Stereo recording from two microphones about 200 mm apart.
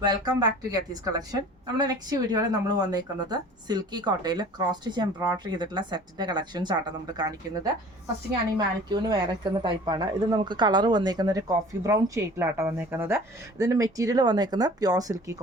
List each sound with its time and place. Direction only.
0.0 s a woman's voice: 20° right (ahead or behind)